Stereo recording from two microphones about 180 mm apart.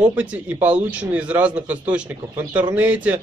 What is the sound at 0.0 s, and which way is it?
A man's voice, 10° right (ahead or behind).